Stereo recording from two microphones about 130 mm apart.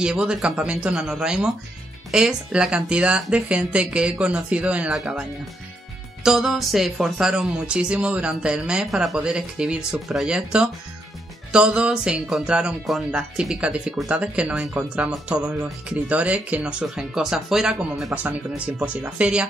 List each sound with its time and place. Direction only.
0.0 s speech: 5° right (ahead or behind)
6.2 s speech: 5° right (ahead or behind)